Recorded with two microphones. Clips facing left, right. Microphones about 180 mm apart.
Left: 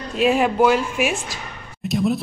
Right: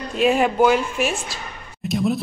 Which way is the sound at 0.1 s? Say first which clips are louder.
Even; centre (ahead or behind).